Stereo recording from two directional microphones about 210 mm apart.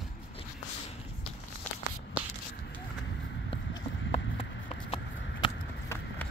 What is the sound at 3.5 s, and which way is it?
Run, 25° left (ahead or behind).